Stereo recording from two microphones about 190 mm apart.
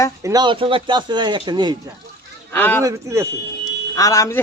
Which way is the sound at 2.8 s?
15° right (ahead or behind).